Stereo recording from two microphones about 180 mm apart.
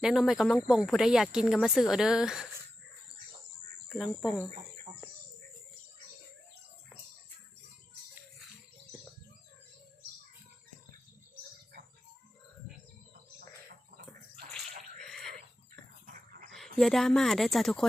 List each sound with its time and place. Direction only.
0.0 s speech: centre (ahead or behind)
3.8 s cricket: centre (ahead or behind)
4.9 s bird: 35° right (ahead or behind)
14.5 s bathtub: centre (ahead or behind)
16.0 s dog: 50° right (ahead or behind)
16.7 s speech: centre (ahead or behind)